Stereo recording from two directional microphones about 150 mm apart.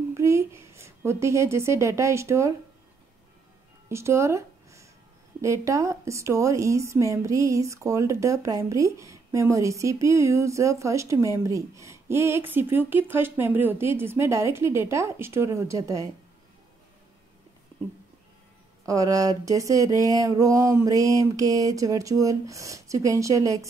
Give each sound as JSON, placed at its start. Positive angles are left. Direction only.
{"t": 0.1, "sound": "a woman's voice", "side_deg": -20}
{"t": 3.9, "sound": "a woman's voice", "side_deg": -20}
{"t": 18.9, "sound": "a woman's voice", "side_deg": -20}